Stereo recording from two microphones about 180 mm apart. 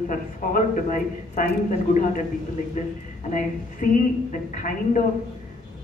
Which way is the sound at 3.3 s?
45° left (ahead or behind).